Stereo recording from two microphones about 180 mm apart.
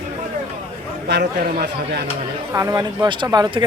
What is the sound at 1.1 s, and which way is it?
Speech, 65° right (ahead or behind).